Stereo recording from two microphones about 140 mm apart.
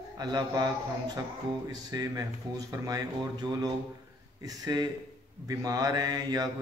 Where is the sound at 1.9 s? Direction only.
25° right (ahead or behind).